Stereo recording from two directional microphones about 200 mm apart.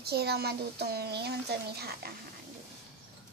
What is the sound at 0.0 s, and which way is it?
Speech, 55° right (ahead or behind).